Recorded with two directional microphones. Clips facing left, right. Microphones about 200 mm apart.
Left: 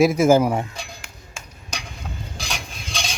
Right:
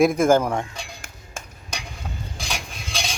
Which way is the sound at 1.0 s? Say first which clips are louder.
Right 2 dB; 50° right (ahead or behind).